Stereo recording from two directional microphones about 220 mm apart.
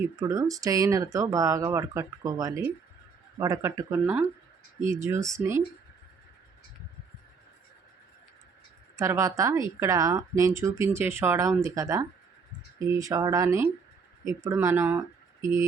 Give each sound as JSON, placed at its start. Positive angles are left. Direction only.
{"t": 0.2, "sound": "speech", "side_deg": -15}
{"t": 9.0, "sound": "speech", "side_deg": -15}